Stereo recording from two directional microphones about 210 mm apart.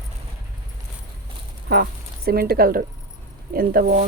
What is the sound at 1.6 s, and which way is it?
Speech, 45° right (ahead or behind).